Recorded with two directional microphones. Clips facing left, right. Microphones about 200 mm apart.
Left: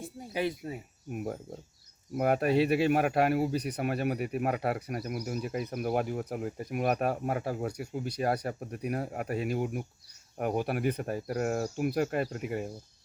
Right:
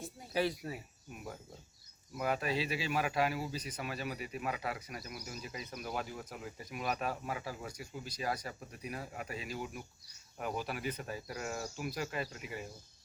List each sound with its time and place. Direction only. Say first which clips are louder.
0.3 s speech: left 2 dB; 20° left (ahead or behind)
1.1 s speech: left 11 dB; 55° left (ahead or behind)